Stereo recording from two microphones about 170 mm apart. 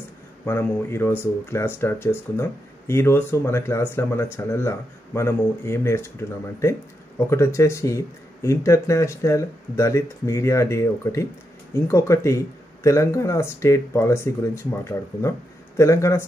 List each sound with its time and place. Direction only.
0.5 s speech: 15° left (ahead or behind)